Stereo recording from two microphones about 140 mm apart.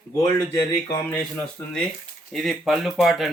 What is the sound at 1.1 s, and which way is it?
Speech, 10° left (ahead or behind).